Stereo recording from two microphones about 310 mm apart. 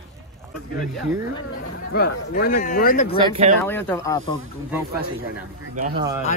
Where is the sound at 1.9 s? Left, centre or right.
Left.